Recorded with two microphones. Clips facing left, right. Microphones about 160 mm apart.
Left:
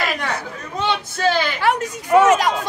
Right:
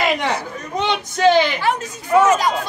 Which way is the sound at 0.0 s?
20° right (ahead or behind).